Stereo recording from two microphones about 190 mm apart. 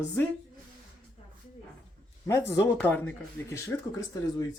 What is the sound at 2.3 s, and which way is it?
Speech, 15° left (ahead or behind).